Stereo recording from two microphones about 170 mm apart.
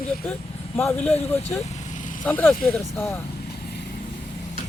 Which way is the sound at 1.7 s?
45° left (ahead or behind).